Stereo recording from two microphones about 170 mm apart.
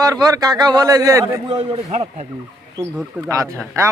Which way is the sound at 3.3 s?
20° right (ahead or behind).